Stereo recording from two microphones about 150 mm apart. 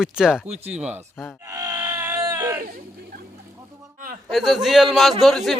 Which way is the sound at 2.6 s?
75° right (ahead or behind).